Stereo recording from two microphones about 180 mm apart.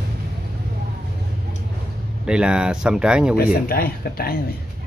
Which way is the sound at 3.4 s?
55° left (ahead or behind).